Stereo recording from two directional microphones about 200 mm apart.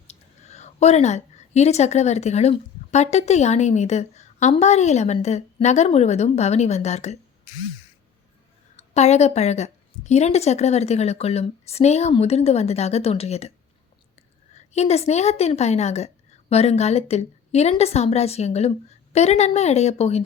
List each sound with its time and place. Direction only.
0.1 s a woman's voice: 35° left (ahead or behind)
8.7 s a woman's voice: 35° left (ahead or behind)
14.5 s a woman's voice: 35° left (ahead or behind)